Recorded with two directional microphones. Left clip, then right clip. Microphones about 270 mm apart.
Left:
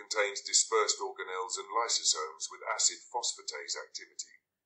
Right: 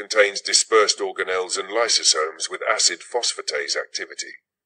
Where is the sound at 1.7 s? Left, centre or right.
Right.